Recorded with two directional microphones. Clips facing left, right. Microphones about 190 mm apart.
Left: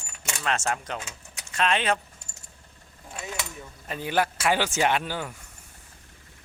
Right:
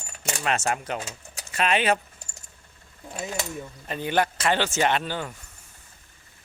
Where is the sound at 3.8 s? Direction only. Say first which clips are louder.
Right 1 dB; 5° left (ahead or behind).